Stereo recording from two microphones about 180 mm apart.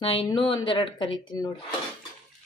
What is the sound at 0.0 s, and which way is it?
Speech, 30° left (ahead or behind).